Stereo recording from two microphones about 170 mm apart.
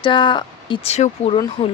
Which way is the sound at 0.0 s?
25° left (ahead or behind).